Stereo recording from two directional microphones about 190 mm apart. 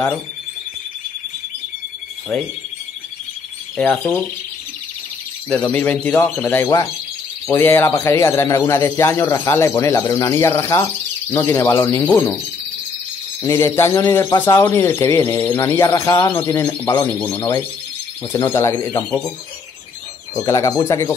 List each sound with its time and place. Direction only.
3.7 s speech: 5° left (ahead or behind)
5.5 s a man's voice: 10° left (ahead or behind)
13.4 s a man's voice: 15° left (ahead or behind)
20.4 s a man's voice: 15° left (ahead or behind)